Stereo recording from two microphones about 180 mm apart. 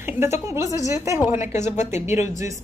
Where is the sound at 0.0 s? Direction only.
15° right (ahead or behind).